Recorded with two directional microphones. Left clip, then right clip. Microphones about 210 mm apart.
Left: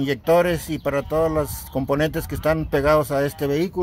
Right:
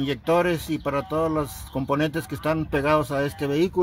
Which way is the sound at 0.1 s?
20° left (ahead or behind).